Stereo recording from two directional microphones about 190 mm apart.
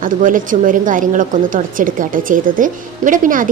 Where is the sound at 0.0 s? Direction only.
45° right (ahead or behind).